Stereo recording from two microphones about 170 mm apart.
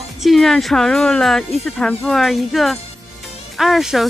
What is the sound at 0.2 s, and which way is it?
Speech, centre (ahead or behind).